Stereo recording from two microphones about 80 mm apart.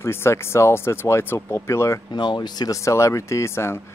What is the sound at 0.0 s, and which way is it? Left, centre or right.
Speech, left.